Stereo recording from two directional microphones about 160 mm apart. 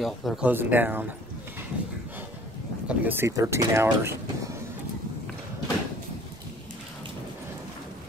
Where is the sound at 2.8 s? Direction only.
10° right (ahead or behind).